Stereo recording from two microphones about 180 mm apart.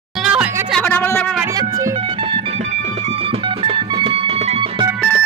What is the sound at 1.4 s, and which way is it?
Music, 20° right (ahead or behind).